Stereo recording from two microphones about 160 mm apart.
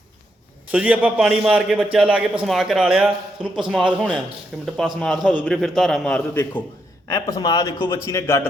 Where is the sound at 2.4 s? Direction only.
Centre (ahead or behind).